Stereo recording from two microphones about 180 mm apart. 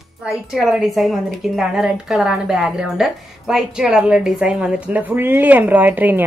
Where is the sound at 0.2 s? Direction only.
Centre (ahead or behind).